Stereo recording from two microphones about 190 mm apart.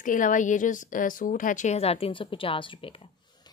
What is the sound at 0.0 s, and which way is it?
A woman's voice, 45° left (ahead or behind).